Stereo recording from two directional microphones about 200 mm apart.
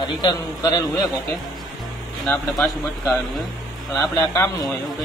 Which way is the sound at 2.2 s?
Centre (ahead or behind).